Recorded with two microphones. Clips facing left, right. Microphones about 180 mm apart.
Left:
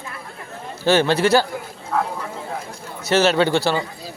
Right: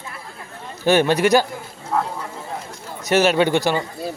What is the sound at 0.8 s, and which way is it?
Speech, 15° right (ahead or behind).